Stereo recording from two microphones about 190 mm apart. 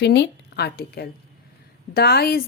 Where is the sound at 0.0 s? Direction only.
65° left (ahead or behind).